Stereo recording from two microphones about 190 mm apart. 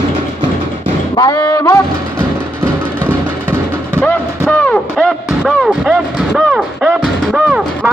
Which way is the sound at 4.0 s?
10° left (ahead or behind).